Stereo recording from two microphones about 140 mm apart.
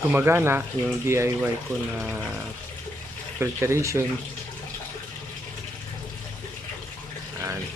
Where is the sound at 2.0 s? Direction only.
5° right (ahead or behind).